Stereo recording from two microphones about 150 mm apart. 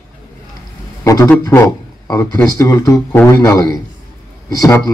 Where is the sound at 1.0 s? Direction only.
20° left (ahead or behind).